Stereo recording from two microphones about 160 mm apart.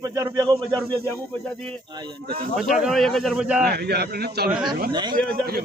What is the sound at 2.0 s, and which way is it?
Speech, 30° right (ahead or behind).